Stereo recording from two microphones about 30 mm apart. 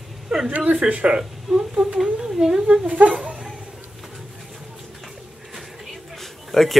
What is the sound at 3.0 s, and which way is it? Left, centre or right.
Speech, right.